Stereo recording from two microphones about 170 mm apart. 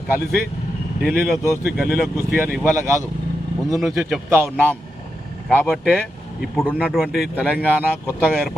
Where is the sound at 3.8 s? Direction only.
Centre (ahead or behind).